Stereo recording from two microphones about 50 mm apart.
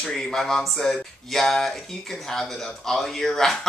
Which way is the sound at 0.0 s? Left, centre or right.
Centre.